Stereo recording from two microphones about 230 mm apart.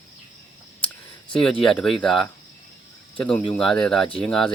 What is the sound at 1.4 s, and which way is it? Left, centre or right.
Speech, centre.